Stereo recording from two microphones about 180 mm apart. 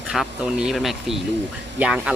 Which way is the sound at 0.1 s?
5° right (ahead or behind).